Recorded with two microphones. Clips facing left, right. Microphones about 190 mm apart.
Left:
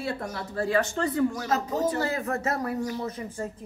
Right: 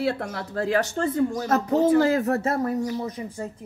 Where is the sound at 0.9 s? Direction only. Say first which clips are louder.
Right 2 dB; 25° right (ahead or behind).